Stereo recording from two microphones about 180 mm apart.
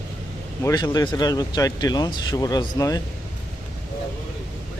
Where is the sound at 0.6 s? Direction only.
25° left (ahead or behind).